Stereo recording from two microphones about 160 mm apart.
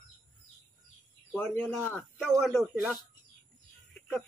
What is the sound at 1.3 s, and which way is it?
Speech, 5° left (ahead or behind).